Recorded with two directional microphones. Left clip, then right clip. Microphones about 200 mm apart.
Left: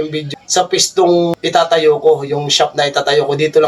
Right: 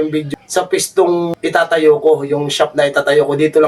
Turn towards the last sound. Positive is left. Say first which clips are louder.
# right 1 dB
turn(degrees=-15)  # may be behind; listen again after turning